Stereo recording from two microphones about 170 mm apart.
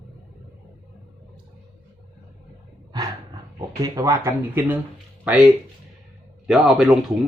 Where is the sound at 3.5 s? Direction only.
20° right (ahead or behind).